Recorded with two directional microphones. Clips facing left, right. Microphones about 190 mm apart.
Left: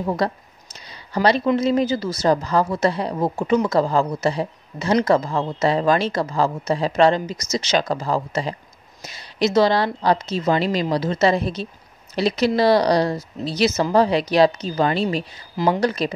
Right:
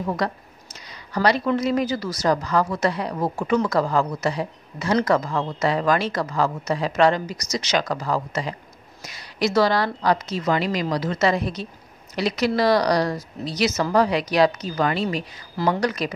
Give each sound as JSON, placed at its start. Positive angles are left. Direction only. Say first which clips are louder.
{"t": 0.0, "sound": "a woman's voice", "louder": "left 3 dB", "side_deg": 25}
{"t": 0.7, "sound": "a sound", "louder": "left 2 dB", "side_deg": 30}
{"t": 1.6, "sound": "a woman's voice", "louder": "left 3 dB", "side_deg": 25}